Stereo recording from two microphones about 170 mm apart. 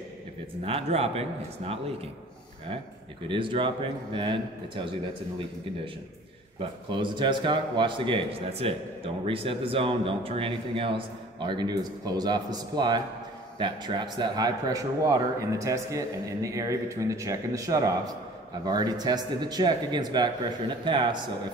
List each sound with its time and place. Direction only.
0.7 s speech: 35° right (ahead or behind)
3.3 s a man's voice: 30° right (ahead or behind)
6.6 s a man's voice: 30° right (ahead or behind)